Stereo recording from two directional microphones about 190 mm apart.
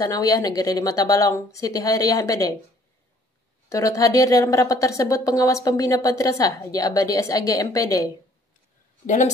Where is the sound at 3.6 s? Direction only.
15° left (ahead or behind).